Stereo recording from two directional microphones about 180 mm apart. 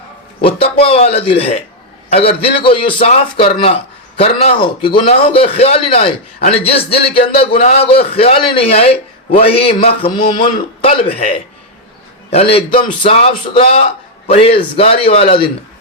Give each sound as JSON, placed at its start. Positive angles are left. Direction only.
{"t": 0.4, "sound": "a man's voice", "side_deg": 30}
{"t": 12.3, "sound": "a man's voice", "side_deg": 35}